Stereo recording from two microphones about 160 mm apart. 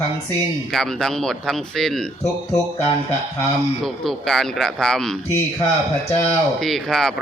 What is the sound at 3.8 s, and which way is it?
Speech, centre (ahead or behind).